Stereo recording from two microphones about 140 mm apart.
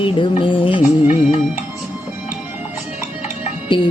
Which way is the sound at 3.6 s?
35° left (ahead or behind).